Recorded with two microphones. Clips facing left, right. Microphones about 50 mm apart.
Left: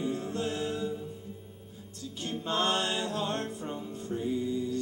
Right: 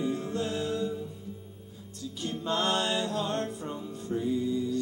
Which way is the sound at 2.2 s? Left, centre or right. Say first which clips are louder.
Right 1 dB; left.